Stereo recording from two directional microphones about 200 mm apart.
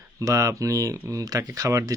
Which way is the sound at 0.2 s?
15° right (ahead or behind).